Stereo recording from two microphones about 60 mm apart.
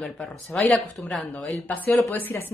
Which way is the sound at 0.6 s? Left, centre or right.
Centre.